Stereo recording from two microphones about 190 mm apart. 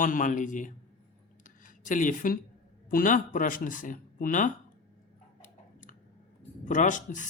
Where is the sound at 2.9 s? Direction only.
45° left (ahead or behind).